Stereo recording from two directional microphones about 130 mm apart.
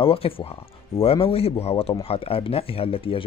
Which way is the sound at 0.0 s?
45° left (ahead or behind).